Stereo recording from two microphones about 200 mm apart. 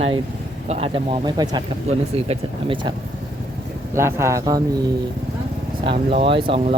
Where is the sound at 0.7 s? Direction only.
30° right (ahead or behind).